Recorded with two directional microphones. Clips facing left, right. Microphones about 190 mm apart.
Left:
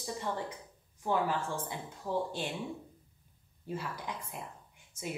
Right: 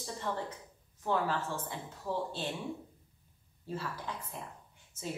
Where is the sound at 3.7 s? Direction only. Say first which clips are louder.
Even; 15° left (ahead or behind).